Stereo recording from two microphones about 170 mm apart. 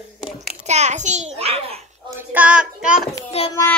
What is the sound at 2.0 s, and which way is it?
Child singing, 10° right (ahead or behind).